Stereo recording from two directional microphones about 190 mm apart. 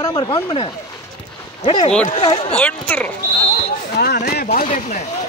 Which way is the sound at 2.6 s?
5° left (ahead or behind).